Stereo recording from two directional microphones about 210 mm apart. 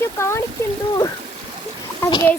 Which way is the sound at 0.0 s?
10° left (ahead or behind).